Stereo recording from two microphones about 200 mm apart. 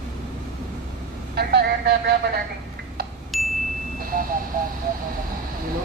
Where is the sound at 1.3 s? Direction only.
55° right (ahead or behind).